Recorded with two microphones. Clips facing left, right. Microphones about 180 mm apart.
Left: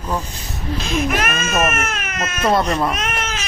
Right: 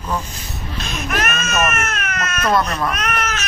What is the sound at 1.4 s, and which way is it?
Baby cry, 25° left (ahead or behind).